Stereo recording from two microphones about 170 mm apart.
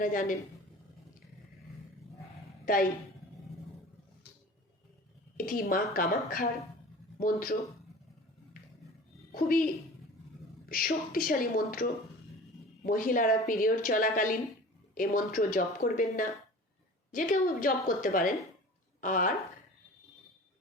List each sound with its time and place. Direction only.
0.0 s a woman's voice: 55° left (ahead or behind)
2.6 s speech: 55° left (ahead or behind)
5.4 s a woman's voice: 55° left (ahead or behind)
9.3 s a woman's voice: 60° left (ahead or behind)
10.7 s a woman's voice: 55° left (ahead or behind)